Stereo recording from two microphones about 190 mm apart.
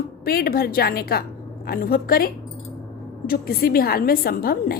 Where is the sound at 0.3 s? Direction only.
50° left (ahead or behind).